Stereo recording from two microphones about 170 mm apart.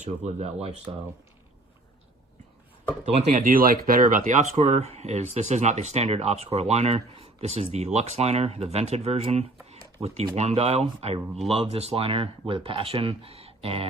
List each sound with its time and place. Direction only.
0.0 s speech: 45° right (ahead or behind)
3.1 s speech: 40° right (ahead or behind)